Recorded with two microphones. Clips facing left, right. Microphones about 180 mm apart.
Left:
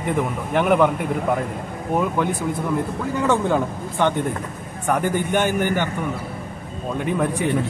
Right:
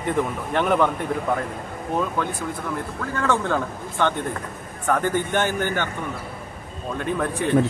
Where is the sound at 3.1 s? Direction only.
15° left (ahead or behind).